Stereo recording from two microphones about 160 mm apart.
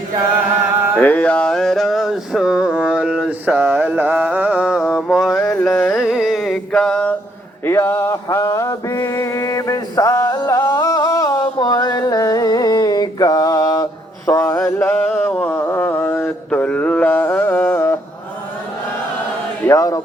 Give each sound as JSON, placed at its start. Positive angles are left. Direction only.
{"t": 0.9, "sound": "a sound", "side_deg": 10}
{"t": 7.6, "sound": "mantra", "side_deg": 15}
{"t": 19.6, "sound": "speech", "side_deg": 20}